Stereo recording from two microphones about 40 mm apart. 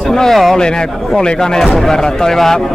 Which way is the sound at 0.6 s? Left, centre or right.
Centre.